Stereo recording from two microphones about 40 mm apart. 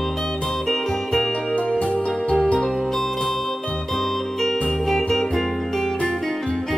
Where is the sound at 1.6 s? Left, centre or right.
Left.